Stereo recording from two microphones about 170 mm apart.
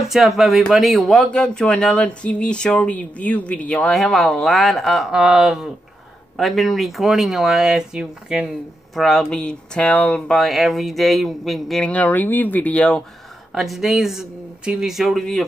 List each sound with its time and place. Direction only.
0.4 s a man's voice: centre (ahead or behind)